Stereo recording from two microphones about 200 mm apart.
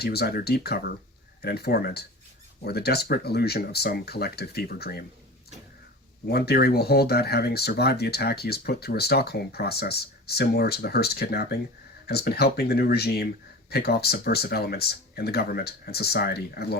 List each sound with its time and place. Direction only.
0.0 s speech: 50° left (ahead or behind)
6.2 s speech: 55° left (ahead or behind)